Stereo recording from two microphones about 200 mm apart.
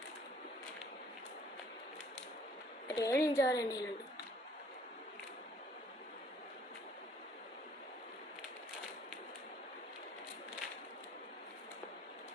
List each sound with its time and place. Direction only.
2.9 s a woman's voice: 15° left (ahead or behind)